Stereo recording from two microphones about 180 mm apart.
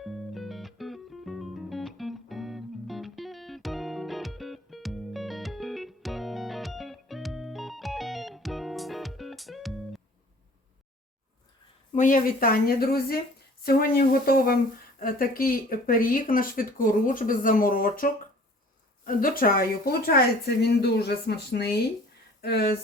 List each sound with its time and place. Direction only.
0.0 s music: centre (ahead or behind)
11.9 s speech: 50° left (ahead or behind)